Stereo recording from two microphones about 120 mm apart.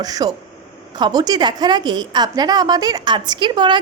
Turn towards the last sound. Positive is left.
turn(degrees=-40)  # may be behind; listen again after turning